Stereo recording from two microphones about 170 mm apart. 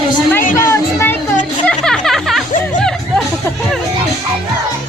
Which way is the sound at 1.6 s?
5° left (ahead or behind).